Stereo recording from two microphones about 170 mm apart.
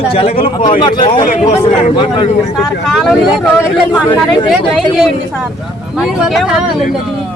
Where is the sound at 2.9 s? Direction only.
Centre (ahead or behind).